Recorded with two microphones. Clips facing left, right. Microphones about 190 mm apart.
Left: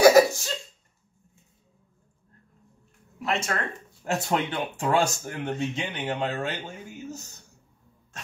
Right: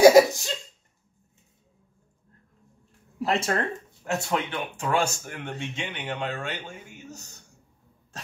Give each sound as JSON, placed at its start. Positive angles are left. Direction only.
{"t": 0.0, "sound": "a sound", "side_deg": -15}
{"t": 3.2, "sound": "speech", "side_deg": -35}
{"t": 4.0, "sound": "speech", "side_deg": 30}